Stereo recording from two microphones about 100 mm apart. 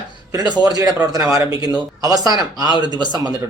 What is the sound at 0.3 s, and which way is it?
A man's voice, 45° right (ahead or behind).